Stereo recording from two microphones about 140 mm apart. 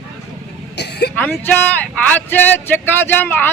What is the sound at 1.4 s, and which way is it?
A man's voice, 10° left (ahead or behind).